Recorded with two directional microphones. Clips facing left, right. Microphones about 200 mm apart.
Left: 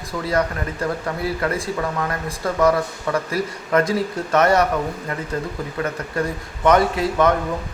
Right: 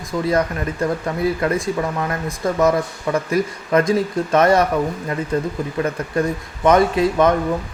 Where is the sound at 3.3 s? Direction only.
20° right (ahead or behind).